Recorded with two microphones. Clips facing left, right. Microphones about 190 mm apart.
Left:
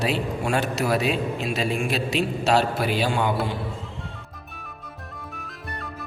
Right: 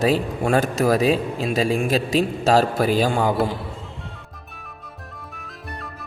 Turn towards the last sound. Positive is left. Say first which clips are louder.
# even
turn(degrees=0)  # may be behind; listen again after turning